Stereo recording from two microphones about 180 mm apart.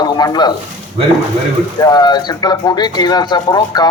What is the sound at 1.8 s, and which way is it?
A man's voice, 20° left (ahead or behind).